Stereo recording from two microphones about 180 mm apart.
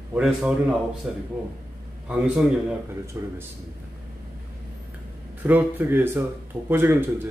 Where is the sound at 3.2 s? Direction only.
15° right (ahead or behind).